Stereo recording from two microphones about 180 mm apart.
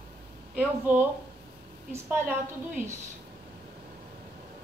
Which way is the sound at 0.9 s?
10° right (ahead or behind).